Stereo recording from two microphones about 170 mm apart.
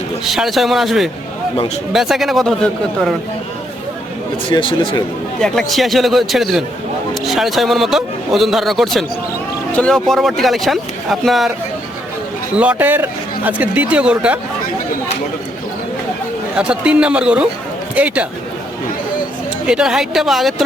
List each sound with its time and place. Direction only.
0.3 s a man's voice: centre (ahead or behind)
4.4 s speech: 30° left (ahead or behind)
5.4 s a man's voice: centre (ahead or behind)
12.5 s speech: 10° right (ahead or behind)
16.6 s speech: 5° right (ahead or behind)
19.6 s a man's voice: 5° right (ahead or behind)